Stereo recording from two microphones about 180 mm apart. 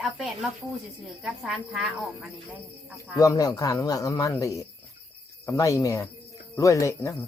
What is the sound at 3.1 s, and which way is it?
Speech, 20° left (ahead or behind).